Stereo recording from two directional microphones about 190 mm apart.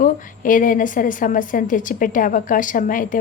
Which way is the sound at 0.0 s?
45° left (ahead or behind).